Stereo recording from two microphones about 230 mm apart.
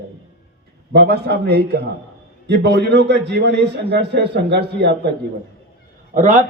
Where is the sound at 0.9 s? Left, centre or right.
Right.